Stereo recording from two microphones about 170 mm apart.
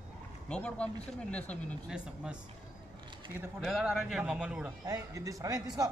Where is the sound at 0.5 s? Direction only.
5° left (ahead or behind).